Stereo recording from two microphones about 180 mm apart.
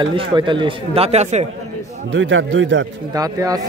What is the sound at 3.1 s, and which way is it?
Speech, 20° right (ahead or behind).